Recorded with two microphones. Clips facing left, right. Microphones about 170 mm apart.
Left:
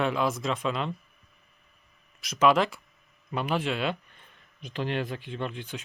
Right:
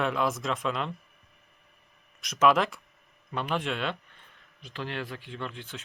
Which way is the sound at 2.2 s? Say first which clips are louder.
Left 1 dB; centre (ahead or behind).